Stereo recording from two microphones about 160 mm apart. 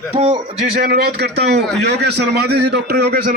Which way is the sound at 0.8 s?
70° right (ahead or behind).